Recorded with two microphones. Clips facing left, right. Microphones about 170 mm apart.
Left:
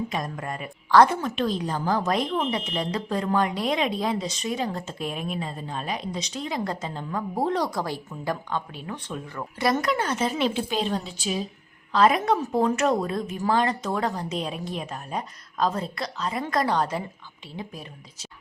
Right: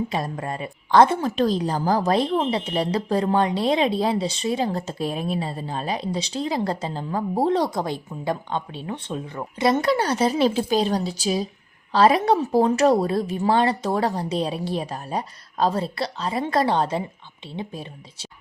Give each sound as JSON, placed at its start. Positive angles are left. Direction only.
{"t": 0.1, "sound": "a woman's voice", "side_deg": -30}